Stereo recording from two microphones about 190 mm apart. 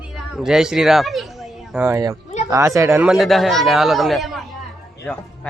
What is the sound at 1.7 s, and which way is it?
Speech, 15° right (ahead or behind).